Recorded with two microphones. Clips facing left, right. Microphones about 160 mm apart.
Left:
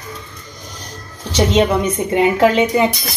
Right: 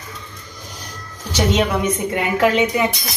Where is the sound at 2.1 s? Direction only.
30° left (ahead or behind).